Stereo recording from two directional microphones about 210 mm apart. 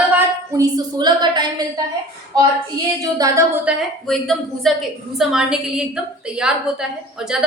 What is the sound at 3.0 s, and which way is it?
Speech, 15° right (ahead or behind).